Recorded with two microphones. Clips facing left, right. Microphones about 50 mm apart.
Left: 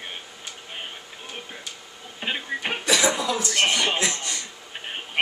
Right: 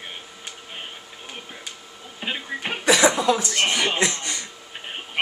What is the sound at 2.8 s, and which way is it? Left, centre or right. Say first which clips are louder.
Cough: right 5 dB; centre.